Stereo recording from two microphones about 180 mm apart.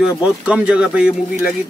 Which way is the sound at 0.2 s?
5° right (ahead or behind).